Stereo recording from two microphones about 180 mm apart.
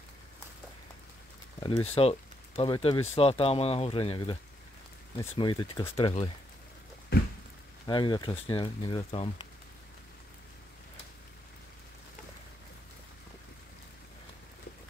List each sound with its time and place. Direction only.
1.6 s speech: 20° left (ahead or behind)
1.9 s speech: 35° left (ahead or behind)
7.8 s speech: 25° left (ahead or behind)